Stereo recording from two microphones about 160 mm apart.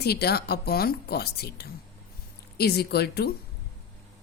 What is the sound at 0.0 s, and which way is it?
A woman's voice, 85° left.